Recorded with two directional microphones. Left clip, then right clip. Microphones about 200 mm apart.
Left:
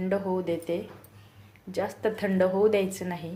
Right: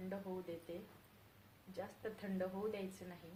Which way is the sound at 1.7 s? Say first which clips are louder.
Left 19 dB; 25° left (ahead or behind).